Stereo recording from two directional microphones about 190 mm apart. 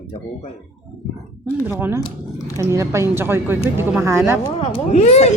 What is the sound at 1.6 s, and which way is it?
Speech, 10° right (ahead or behind).